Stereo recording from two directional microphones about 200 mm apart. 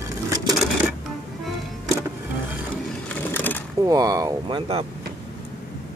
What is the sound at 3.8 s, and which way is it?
Speech, 15° right (ahead or behind).